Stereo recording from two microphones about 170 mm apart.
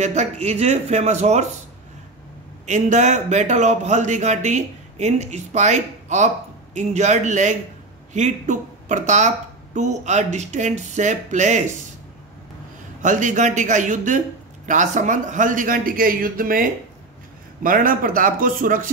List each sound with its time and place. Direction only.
0.0 s speech: 40° right (ahead or behind)
2.6 s speech: 45° right (ahead or behind)
13.0 s speech: 50° right (ahead or behind)